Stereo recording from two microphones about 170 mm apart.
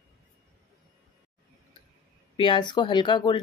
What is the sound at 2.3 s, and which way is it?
Speech, 25° left (ahead or behind).